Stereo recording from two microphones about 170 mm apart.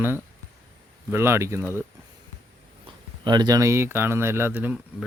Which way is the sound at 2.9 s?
25° right (ahead or behind).